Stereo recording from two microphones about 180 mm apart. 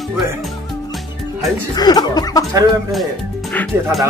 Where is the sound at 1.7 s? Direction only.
20° left (ahead or behind).